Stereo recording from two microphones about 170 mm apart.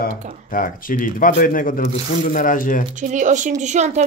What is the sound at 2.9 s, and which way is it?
Speech, 45° right (ahead or behind).